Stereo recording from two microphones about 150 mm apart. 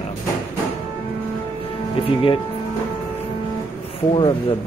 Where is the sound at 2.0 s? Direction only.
35° left (ahead or behind).